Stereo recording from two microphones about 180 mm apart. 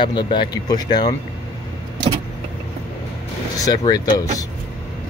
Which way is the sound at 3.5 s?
20° left (ahead or behind).